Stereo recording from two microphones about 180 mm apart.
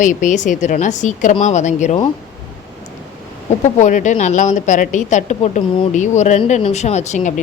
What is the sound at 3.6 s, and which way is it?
A woman's voice, 45° left (ahead or behind).